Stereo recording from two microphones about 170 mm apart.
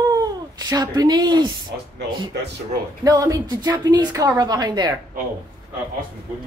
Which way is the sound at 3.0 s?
20° right (ahead or behind).